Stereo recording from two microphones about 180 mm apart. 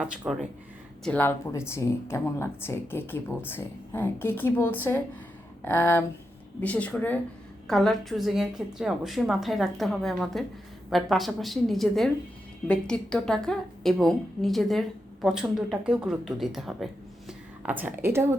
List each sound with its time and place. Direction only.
0.2 s speech: 5° right (ahead or behind)
1.0 s a woman's voice: 10° left (ahead or behind); by 18.3 s 15° right (ahead or behind)